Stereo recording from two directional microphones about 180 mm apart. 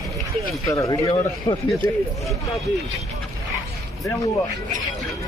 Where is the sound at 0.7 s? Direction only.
15° left (ahead or behind).